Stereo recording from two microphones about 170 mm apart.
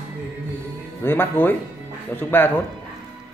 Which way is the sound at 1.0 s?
15° left (ahead or behind).